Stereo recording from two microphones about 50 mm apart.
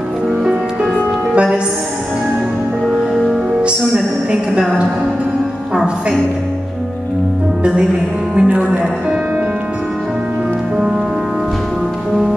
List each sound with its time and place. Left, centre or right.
1.3 s music: right
3.9 s a sound: centre
8.4 s music: centre